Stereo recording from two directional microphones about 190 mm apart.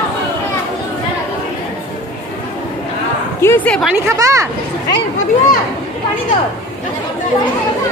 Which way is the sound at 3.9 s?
15° right (ahead or behind).